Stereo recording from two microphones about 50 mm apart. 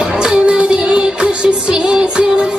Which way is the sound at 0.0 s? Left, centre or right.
Centre.